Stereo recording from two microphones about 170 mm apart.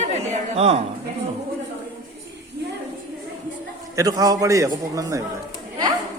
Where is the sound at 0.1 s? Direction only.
40° right (ahead or behind).